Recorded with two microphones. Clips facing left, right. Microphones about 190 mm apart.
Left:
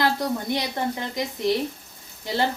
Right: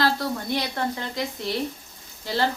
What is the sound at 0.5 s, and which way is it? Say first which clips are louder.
Speech: left 1 dB; 15° left (ahead or behind).